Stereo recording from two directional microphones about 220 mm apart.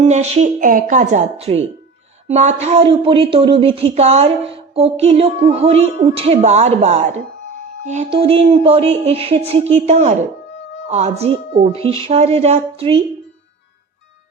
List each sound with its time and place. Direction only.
0.0 s a woman's voice: 30° right (ahead or behind)
2.2 s music: 30° right (ahead or behind)